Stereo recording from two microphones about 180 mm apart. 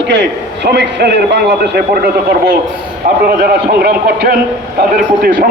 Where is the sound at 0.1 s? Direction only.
70° right (ahead or behind).